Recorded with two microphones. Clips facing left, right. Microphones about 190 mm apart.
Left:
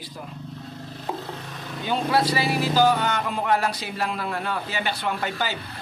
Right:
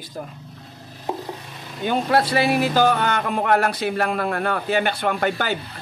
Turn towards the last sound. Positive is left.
turn(degrees=-55)  # may be behind; listen again after turning